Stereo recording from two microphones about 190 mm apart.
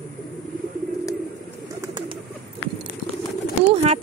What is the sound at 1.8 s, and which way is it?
Bird, 25° right (ahead or behind).